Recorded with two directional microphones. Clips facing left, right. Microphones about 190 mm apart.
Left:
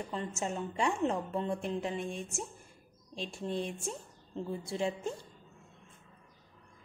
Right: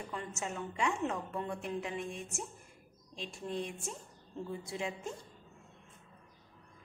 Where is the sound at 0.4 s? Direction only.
30° left (ahead or behind).